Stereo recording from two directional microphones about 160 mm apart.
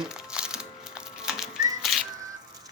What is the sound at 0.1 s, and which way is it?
Music, 5° right (ahead or behind).